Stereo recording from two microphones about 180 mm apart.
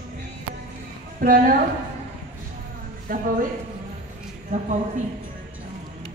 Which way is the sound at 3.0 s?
50° right (ahead or behind).